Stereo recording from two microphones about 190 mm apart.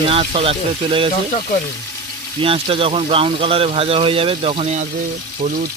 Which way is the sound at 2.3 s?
30° right (ahead or behind).